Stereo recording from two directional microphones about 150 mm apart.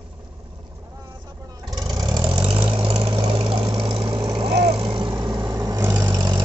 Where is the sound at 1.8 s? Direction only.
25° right (ahead or behind); by 3.6 s 40° right (ahead or behind).